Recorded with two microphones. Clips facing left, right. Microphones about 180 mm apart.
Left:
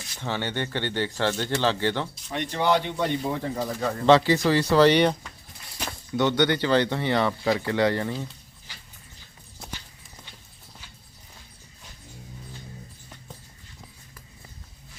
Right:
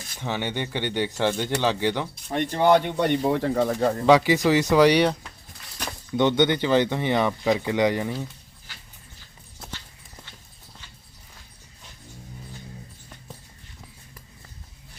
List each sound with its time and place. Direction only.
0.2 s speech: 15° right (ahead or behind)
2.1 s speech: 50° right (ahead or behind)
4.0 s speech: 15° right (ahead or behind)
6.1 s speech: 20° right (ahead or behind)